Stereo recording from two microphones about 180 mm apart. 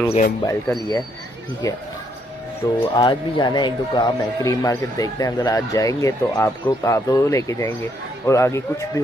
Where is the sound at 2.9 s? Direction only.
25° left (ahead or behind).